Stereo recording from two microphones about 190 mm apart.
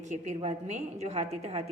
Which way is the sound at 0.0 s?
40° right (ahead or behind).